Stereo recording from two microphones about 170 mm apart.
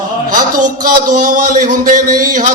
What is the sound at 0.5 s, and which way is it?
A man's voice, 50° right (ahead or behind).